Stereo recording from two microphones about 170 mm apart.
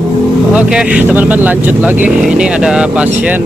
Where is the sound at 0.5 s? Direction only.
5° right (ahead or behind).